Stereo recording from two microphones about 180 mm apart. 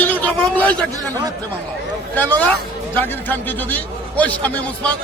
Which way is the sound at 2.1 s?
10° left (ahead or behind).